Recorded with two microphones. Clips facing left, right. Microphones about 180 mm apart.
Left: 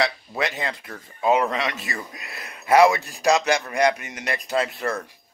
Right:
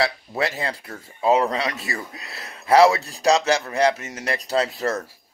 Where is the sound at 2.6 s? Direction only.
35° right (ahead or behind).